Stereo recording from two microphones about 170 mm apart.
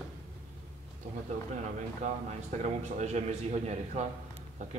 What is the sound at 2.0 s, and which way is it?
A man's voice, 45° right (ahead or behind).